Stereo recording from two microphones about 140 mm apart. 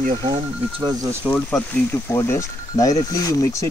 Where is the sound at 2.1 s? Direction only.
20° left (ahead or behind).